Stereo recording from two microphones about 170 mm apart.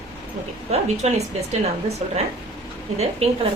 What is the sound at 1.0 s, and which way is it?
A woman's voice, 40° right (ahead or behind).